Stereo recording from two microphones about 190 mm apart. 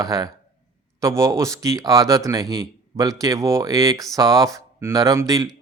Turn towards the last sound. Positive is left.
turn(degrees=-20)  # may be behind; listen again after turning